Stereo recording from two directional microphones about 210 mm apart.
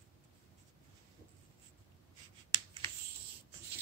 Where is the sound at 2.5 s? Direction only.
20° right (ahead or behind).